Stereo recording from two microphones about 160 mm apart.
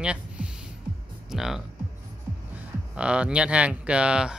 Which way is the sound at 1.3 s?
Centre (ahead or behind).